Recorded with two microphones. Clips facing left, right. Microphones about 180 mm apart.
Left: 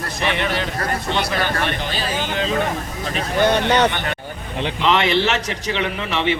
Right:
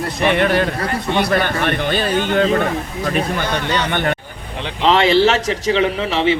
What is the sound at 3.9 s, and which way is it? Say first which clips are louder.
Speech: right 6 dB; 50° right (ahead or behind).